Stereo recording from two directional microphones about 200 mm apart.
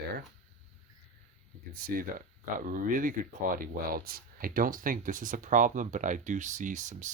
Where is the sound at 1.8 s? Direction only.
45° right (ahead or behind).